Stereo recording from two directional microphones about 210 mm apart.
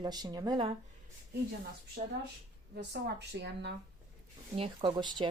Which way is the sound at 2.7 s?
50° right (ahead or behind).